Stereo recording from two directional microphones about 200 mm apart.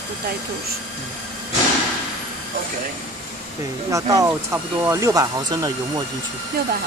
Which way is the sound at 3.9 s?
15° right (ahead or behind).